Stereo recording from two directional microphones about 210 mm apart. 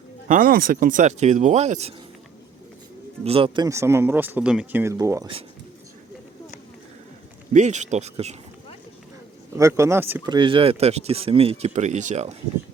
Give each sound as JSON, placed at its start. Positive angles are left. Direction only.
{"t": 0.3, "sound": "speech", "side_deg": -40}
{"t": 3.2, "sound": "speech", "side_deg": -25}
{"t": 7.5, "sound": "speech", "side_deg": -35}
{"t": 9.6, "sound": "speech", "side_deg": -15}
{"t": 10.3, "sound": "speech", "side_deg": -25}